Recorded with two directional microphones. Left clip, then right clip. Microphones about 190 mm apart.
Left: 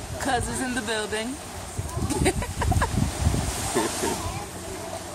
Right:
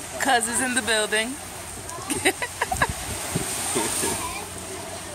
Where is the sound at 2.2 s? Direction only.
Centre (ahead or behind).